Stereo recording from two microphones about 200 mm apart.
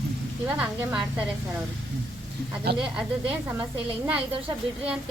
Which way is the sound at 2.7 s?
55° right (ahead or behind).